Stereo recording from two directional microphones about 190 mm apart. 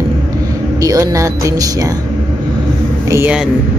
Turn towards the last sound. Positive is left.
turn(degrees=-15)  # may be behind; listen again after turning